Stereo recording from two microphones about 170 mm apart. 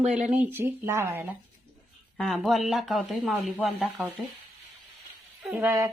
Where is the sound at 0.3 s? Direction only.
10° right (ahead or behind).